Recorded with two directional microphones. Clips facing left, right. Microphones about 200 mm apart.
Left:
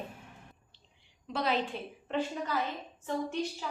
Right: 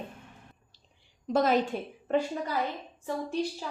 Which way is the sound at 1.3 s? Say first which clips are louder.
Right 7 dB; 45° right (ahead or behind).